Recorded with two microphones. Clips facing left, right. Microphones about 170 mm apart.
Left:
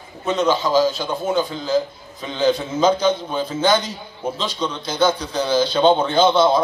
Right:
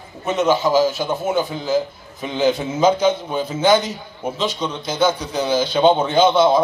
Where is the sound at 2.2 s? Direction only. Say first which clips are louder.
Right 1 dB; 15° right (ahead or behind).